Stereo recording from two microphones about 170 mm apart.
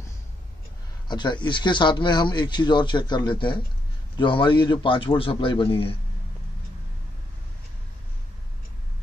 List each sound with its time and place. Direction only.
1.0 s a man's voice: 25° left (ahead or behind)